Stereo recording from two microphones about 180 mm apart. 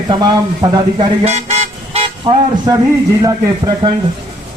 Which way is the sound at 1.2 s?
40° right (ahead or behind).